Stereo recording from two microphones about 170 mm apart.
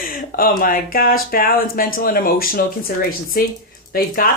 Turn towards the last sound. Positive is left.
turn(degrees=55)  # may be behind; listen again after turning